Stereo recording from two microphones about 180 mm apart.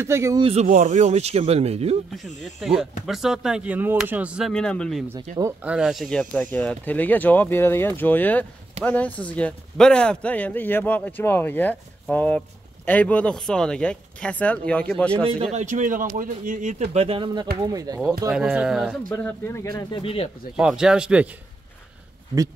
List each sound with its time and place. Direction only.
0.0 s a man's voice: 15° right (ahead or behind)
0.4 s speech: 35° right (ahead or behind)
0.7 s speech: 45° right (ahead or behind)
2.6 s speech: 5° right (ahead or behind)
5.1 s speech: 40° right (ahead or behind)
5.4 s a man's voice: 5° right (ahead or behind)
15.5 s speech: 45° right (ahead or behind)
16.9 s speech: 30° right (ahead or behind)
18.3 s speech: 5° right (ahead or behind)
19.0 s a man's voice: 10° left (ahead or behind)
19.9 s speech: 30° left (ahead or behind)
20.5 s speech: 5° right (ahead or behind)